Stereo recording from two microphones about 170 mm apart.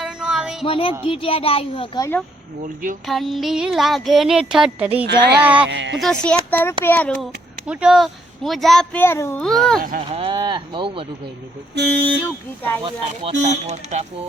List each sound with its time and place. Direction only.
0.0 s a sound: 5° right (ahead or behind)
0.6 s speech: 30° left (ahead or behind)
2.0 s speech: 15° left (ahead or behind)
3.1 s speech: centre (ahead or behind)
5.0 s speech: 75° right (ahead or behind)
5.4 s speech: 10° right (ahead or behind)
5.6 s speech: 90° right
6.0 s speech: 5° left (ahead or behind)
7.7 s speech: 5° right (ahead or behind)
10.1 s speech: 30° right (ahead or behind)
12.2 s speech: 10° left (ahead or behind)
12.8 s speech: 40° right (ahead or behind)